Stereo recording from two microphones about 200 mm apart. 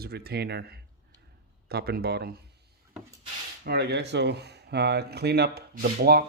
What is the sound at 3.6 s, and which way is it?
Speech, 55° right (ahead or behind).